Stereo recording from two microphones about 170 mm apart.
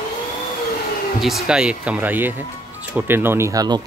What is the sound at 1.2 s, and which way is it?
Speech, 5° right (ahead or behind).